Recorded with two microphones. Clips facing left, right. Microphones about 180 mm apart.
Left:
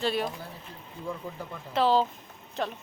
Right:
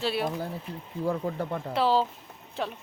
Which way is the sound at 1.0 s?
65° right (ahead or behind).